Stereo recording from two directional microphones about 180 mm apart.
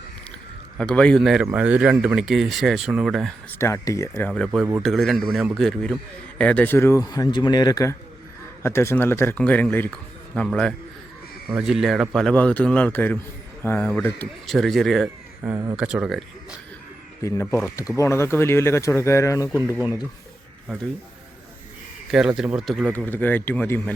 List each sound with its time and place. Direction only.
0.8 s speech: 5° left (ahead or behind)
3.6 s a man's voice: 15° left (ahead or behind)
4.3 s a man's voice: centre (ahead or behind)
15.4 s speech: 20° right (ahead or behind)
15.7 s speech: 5° right (ahead or behind)
17.9 s a man's voice: 15° left (ahead or behind)
22.1 s a man's voice: 5° right (ahead or behind)